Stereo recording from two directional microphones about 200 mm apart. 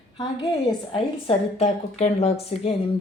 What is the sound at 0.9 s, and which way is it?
A woman's voice, 30° left (ahead or behind).